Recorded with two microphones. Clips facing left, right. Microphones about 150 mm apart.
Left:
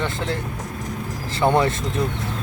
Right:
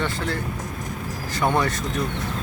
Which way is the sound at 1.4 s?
25° left (ahead or behind).